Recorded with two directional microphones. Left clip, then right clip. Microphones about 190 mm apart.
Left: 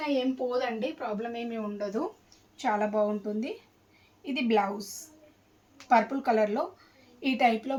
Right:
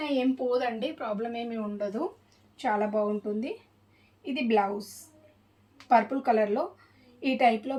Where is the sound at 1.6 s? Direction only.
20° right (ahead or behind).